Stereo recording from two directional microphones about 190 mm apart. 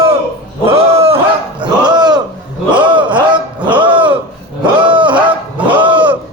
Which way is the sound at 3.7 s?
25° right (ahead or behind).